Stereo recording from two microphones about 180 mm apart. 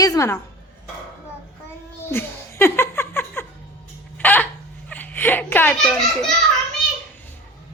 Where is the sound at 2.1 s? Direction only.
15° left (ahead or behind).